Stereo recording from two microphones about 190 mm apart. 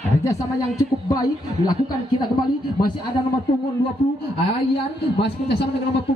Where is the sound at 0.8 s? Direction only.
20° left (ahead or behind).